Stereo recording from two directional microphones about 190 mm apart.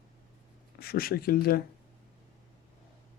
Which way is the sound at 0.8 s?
50° left (ahead or behind).